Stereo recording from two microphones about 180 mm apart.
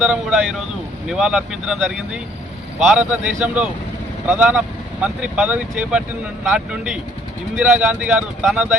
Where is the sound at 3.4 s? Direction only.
5° right (ahead or behind).